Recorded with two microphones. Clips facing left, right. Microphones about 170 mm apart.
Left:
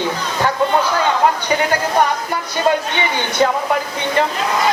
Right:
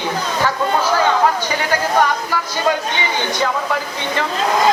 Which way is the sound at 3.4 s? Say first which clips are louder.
Left 6 dB; 35° left (ahead or behind).